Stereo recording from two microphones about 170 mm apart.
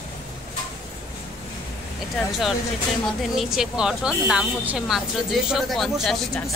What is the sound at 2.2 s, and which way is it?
Speech, centre (ahead or behind).